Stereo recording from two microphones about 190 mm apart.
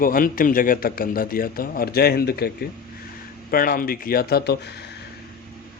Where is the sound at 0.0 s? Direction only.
50° left (ahead or behind).